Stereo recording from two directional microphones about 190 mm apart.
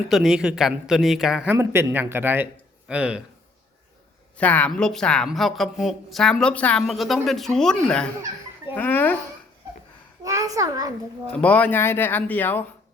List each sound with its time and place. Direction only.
0.1 s a woman's voice: centre (ahead or behind)
4.4 s a woman's voice: 5° left (ahead or behind)
10.2 s a child's voice: 15° right (ahead or behind)
11.3 s speech: 10° left (ahead or behind)